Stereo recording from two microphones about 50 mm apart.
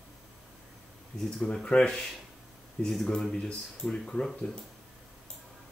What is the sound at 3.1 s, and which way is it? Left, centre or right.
Speech, centre.